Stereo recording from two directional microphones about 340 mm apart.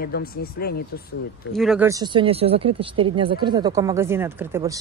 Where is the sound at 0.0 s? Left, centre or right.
Left.